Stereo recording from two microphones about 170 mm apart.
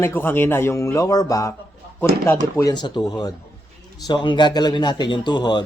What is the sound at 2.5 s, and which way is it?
A man's voice, 25° left (ahead or behind).